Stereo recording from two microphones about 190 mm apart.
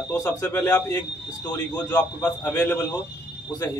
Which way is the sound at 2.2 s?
10° left (ahead or behind).